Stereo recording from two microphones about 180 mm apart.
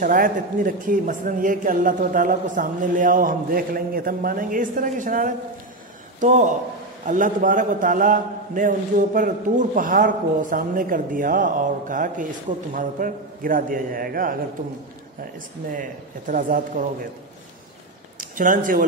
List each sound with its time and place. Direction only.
0.0 s a man's voice: 50° right (ahead or behind)
15.7 s a man's voice: 50° right (ahead or behind)
18.3 s a man's voice: 50° right (ahead or behind)